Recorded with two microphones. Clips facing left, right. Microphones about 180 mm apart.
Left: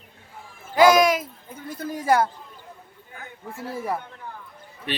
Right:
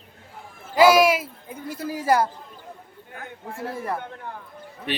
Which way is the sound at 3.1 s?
55° right (ahead or behind).